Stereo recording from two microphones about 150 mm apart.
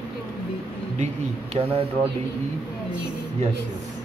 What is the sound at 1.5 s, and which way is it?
Speech, 40° right (ahead or behind).